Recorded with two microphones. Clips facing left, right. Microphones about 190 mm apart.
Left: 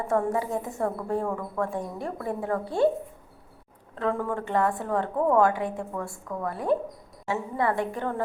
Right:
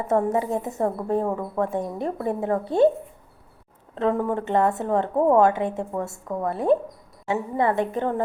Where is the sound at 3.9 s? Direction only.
20° right (ahead or behind).